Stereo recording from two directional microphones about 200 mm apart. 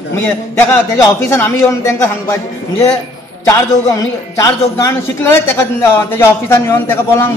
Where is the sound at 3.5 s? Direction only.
15° left (ahead or behind).